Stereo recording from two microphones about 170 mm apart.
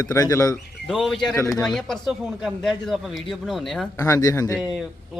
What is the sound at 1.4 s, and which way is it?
Speech, 15° left (ahead or behind).